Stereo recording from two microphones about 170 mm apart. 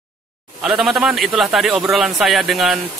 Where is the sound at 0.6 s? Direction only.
5° right (ahead or behind).